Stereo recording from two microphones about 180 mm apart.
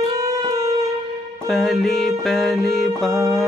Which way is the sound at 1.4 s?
Centre (ahead or behind).